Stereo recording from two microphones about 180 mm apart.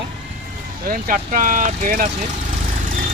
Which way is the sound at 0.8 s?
50° right (ahead or behind).